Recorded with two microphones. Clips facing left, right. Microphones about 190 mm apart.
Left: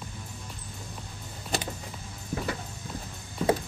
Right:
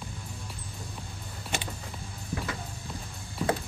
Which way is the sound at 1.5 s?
35° left (ahead or behind).